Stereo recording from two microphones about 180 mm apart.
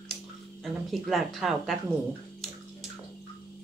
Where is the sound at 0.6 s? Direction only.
Centre (ahead or behind).